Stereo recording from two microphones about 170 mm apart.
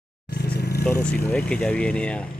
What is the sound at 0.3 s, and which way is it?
Vehicle, 70° left (ahead or behind).